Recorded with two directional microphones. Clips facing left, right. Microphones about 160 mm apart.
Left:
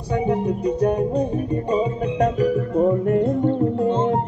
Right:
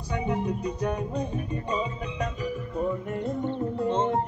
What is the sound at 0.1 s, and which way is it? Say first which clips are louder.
Music: left 7 dB; 35° left (ahead or behind).